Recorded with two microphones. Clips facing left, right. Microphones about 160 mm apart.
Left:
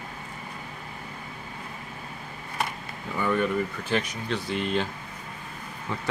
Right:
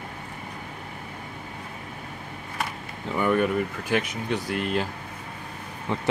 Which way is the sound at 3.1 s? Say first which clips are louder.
Right 3 dB; 15° right (ahead or behind).